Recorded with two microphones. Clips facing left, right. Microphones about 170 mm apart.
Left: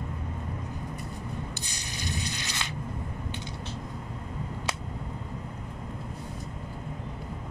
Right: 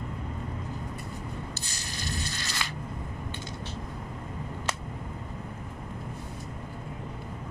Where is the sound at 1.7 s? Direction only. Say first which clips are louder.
Left 1 dB; 15° left (ahead or behind).